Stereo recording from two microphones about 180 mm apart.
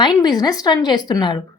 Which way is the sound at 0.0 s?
25° left (ahead or behind).